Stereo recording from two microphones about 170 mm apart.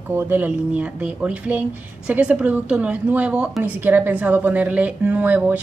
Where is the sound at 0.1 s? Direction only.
10° right (ahead or behind).